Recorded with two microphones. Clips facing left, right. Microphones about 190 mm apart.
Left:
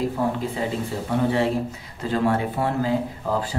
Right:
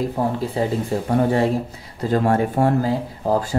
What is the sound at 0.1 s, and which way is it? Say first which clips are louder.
Speech: right 2 dB; 40° right (ahead or behind).